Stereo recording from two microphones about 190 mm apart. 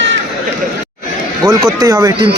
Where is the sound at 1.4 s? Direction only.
20° right (ahead or behind).